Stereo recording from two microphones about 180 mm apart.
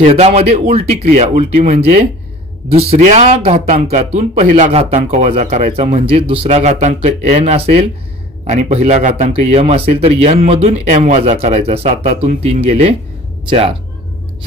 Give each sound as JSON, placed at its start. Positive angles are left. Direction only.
{"t": 0.0, "sound": "speech", "side_deg": -35}